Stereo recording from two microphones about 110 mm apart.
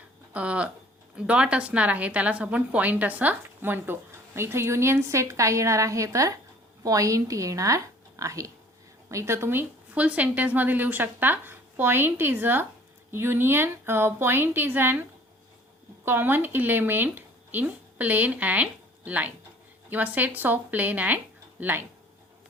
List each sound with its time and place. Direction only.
0.3 s a woman's voice: 10° right (ahead or behind)
16.0 s a woman's voice: 20° right (ahead or behind)